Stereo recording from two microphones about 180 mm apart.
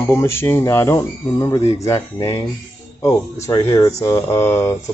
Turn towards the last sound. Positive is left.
turn(degrees=15)  # may be behind; listen again after turning